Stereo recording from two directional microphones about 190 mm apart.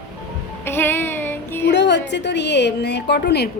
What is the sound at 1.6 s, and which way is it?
A woman's voice, 65° left (ahead or behind).